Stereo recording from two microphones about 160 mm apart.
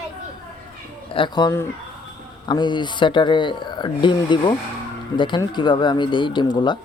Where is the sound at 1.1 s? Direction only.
30° left (ahead or behind).